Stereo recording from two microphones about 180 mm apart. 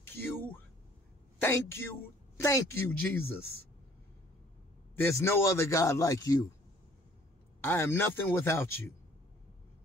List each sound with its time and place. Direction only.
0.0 s a sound: 10° left (ahead or behind)
1.4 s a man's voice: 15° left (ahead or behind)
4.9 s a man's voice: 15° left (ahead or behind)
7.6 s a man's voice: 10° left (ahead or behind)